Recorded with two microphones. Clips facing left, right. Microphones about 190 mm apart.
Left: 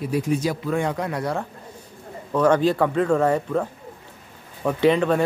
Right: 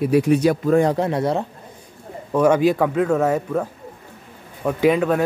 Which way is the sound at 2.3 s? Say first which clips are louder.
Right 2 dB; 10° right (ahead or behind).